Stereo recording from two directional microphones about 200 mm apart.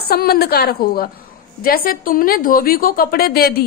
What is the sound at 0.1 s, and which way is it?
A woman's voice, 50° left (ahead or behind).